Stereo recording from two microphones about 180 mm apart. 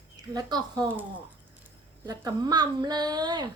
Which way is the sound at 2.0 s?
20° right (ahead or behind).